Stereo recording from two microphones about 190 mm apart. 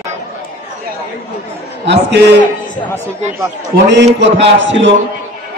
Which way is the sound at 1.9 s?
65° right (ahead or behind).